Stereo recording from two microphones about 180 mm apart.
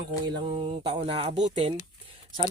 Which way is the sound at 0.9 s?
30° right (ahead or behind).